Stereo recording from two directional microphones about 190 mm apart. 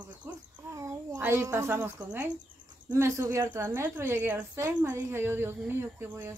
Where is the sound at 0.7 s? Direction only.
15° right (ahead or behind).